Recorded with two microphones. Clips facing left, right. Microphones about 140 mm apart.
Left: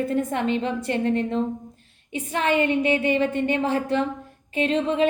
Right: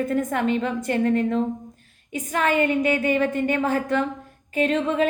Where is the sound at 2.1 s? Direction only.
30° left (ahead or behind).